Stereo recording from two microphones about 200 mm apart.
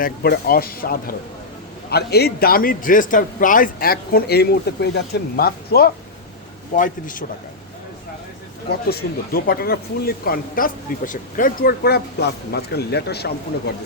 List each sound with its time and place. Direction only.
0.0 s a man's voice: 50° left (ahead or behind)
8.7 s speech: 50° left (ahead or behind)